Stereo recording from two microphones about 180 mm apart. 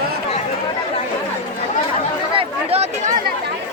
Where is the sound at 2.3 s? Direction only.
35° right (ahead or behind).